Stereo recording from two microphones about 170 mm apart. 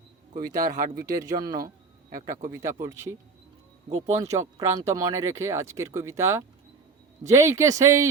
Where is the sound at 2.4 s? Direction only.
20° right (ahead or behind).